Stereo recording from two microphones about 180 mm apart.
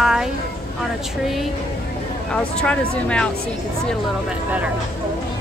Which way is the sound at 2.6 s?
5° left (ahead or behind).